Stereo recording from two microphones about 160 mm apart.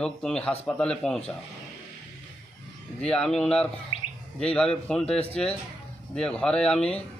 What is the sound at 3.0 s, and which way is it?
Speech, 5° left (ahead or behind).